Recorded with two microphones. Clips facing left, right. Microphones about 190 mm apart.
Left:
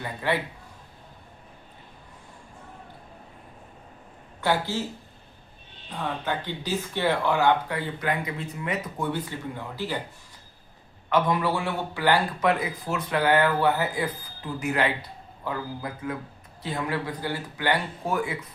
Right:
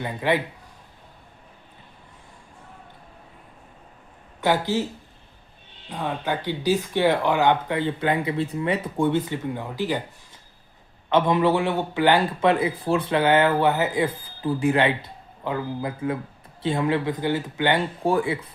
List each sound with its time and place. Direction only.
0.0 s speech: 20° right (ahead or behind)
4.4 s speech: 15° right (ahead or behind)
5.9 s speech: 10° right (ahead or behind); by 9.2 s 30° right (ahead or behind)
9.7 s speech: 15° right (ahead or behind)
11.1 s speech: 25° right (ahead or behind)